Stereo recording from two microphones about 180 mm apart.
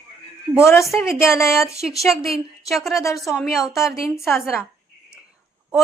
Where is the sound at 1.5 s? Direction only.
15° left (ahead or behind).